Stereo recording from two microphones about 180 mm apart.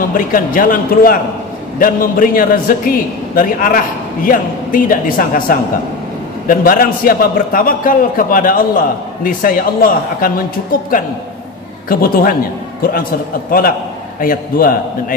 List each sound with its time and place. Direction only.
0.1 s a man's voice: 50° left (ahead or behind)
13.5 s a man's voice: 55° left (ahead or behind)